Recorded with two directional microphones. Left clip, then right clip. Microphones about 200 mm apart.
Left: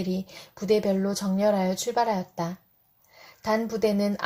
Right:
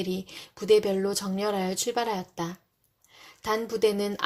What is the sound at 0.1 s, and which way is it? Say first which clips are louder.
A woman's voice: even; 30° right (ahead or behind).